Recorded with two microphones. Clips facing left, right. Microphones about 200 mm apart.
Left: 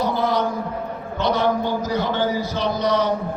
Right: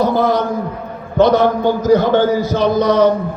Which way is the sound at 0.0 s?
45° right (ahead or behind).